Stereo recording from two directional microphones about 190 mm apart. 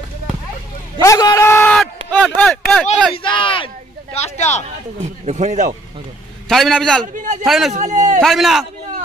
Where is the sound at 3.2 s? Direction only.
25° left (ahead or behind).